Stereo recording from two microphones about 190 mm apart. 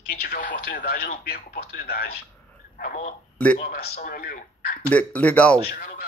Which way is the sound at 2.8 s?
40° left (ahead or behind).